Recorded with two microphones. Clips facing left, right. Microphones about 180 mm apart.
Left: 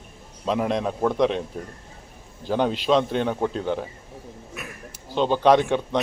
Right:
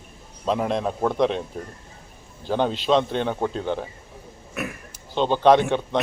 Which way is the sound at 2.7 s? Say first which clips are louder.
Even; 5° left (ahead or behind).